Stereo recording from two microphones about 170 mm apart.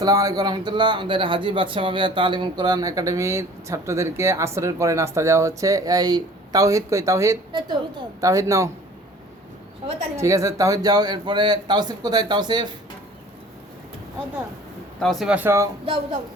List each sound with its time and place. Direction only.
0.0 s speech: 20° right (ahead or behind)
10.2 s speech: 20° right (ahead or behind)
15.0 s speech: 5° right (ahead or behind)